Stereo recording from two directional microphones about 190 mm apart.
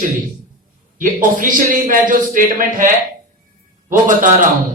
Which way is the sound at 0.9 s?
45° right (ahead or behind).